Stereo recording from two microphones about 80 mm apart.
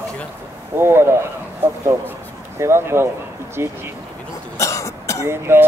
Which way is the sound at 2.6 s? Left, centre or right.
Right.